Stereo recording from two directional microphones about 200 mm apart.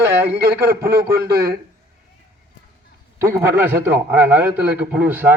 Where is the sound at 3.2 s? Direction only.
10° right (ahead or behind).